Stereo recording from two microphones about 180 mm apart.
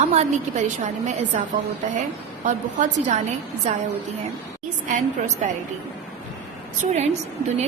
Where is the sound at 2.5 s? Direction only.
45° right (ahead or behind).